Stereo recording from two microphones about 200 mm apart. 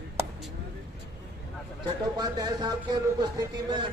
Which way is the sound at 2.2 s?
20° right (ahead or behind).